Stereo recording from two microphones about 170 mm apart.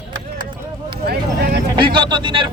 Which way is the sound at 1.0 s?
70° right (ahead or behind).